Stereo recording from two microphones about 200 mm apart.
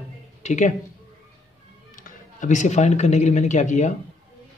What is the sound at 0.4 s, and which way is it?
Speech, 40° left (ahead or behind).